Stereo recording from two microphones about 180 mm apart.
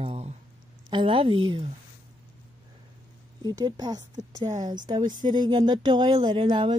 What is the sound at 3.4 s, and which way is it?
Speech, 20° right (ahead or behind).